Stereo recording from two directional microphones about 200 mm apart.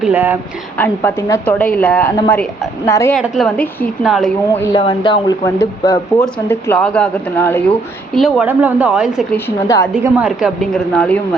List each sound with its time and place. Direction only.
0.0 s speech: 10° right (ahead or behind)
0.8 s a woman's voice: 10° left (ahead or behind)
3.2 s a woman's voice: centre (ahead or behind)
4.8 s a woman's voice: 25° left (ahead or behind)
8.1 s a woman's voice: centre (ahead or behind)
9.3 s a woman's voice: 10° left (ahead or behind)
10.0 s a woman's voice: 5° right (ahead or behind)